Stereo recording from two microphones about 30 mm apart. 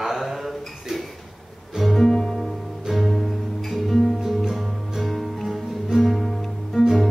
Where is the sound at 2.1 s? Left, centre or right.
Left.